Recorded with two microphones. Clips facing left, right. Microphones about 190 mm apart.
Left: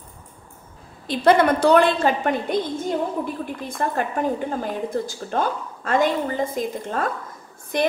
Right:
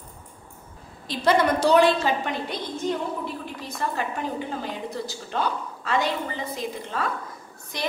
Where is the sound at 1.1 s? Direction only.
55° left (ahead or behind).